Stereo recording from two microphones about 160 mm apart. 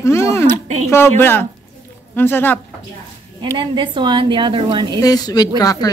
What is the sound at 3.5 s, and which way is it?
A woman's voice, 30° right (ahead or behind).